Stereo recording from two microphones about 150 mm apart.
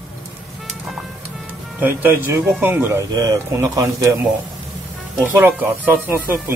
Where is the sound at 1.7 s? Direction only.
10° right (ahead or behind).